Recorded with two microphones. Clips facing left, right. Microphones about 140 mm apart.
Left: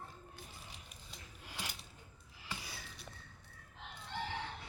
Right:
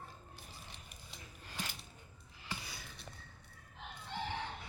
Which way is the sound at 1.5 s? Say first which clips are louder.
Right 2 dB; 10° left (ahead or behind).